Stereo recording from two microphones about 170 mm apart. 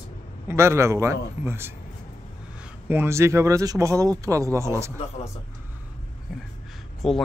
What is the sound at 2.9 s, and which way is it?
Speech, 15° right (ahead or behind).